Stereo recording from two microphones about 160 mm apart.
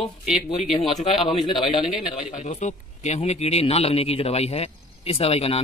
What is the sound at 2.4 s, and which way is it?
Speech, 45° left (ahead or behind).